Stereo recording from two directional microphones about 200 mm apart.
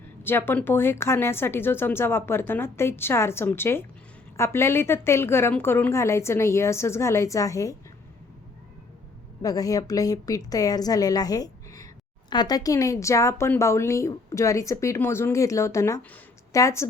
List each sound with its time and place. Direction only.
0.2 s speech: 10° left (ahead or behind)
9.4 s speech: 20° left (ahead or behind)